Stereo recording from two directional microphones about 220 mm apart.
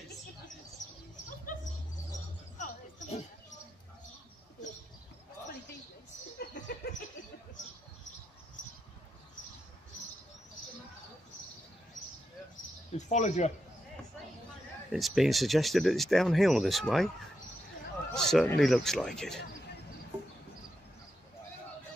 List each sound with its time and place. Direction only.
2.5 s music: 30° left (ahead or behind)
6.3 s a sound: 50° left (ahead or behind)
12.9 s speech: 30° left (ahead or behind)
14.9 s speech: centre (ahead or behind)
18.1 s speech: centre (ahead or behind)